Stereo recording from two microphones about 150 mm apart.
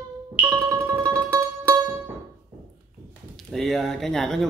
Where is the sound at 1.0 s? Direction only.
20° right (ahead or behind).